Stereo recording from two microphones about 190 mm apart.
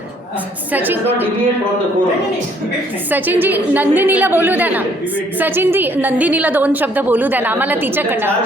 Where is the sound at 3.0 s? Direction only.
10° right (ahead or behind).